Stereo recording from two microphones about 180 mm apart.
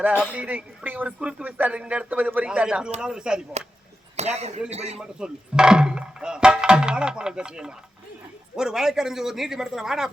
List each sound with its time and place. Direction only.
0.0 s speech: 10° right (ahead or behind)
4.2 s a man's voice: 35° right (ahead or behind)
4.9 s speech: 5° right (ahead or behind)